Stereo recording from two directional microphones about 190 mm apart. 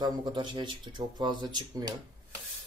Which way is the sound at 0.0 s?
25° right (ahead or behind).